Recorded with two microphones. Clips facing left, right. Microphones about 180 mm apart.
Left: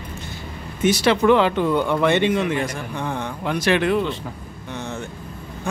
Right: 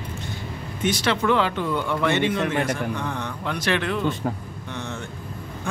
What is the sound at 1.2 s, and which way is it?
Speech, 20° left (ahead or behind).